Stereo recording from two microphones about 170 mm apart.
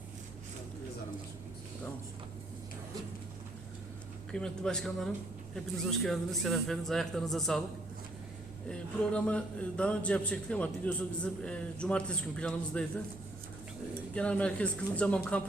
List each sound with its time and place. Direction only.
4.3 s speech: 5° left (ahead or behind)
8.7 s a man's voice: 5° left (ahead or behind)
14.1 s a man's voice: 5° left (ahead or behind)